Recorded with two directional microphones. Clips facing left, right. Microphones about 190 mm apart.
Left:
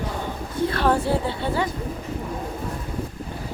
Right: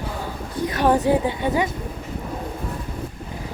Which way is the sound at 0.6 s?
15° right (ahead or behind).